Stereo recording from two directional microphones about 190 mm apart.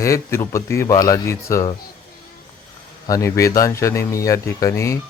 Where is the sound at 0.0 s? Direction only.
15° left (ahead or behind).